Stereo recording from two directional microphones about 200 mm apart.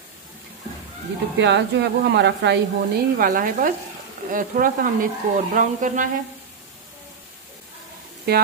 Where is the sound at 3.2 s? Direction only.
45° right (ahead or behind).